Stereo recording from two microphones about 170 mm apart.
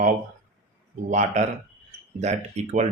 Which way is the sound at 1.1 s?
45° right (ahead or behind).